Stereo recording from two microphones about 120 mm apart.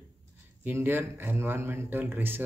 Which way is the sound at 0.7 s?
15° right (ahead or behind).